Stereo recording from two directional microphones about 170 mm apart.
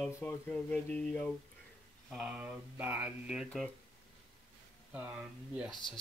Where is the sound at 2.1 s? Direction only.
5° right (ahead or behind).